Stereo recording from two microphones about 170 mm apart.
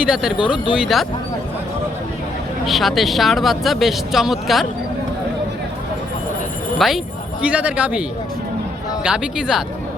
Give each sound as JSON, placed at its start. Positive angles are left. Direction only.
{"t": 0.1, "sound": "speech", "side_deg": -5}
{"t": 0.3, "sound": "speech", "side_deg": 30}
{"t": 0.7, "sound": "speech", "side_deg": 0}
{"t": 2.6, "sound": "speech", "side_deg": 0}
{"t": 6.7, "sound": "speech", "side_deg": 0}
{"t": 9.0, "sound": "speech", "side_deg": -5}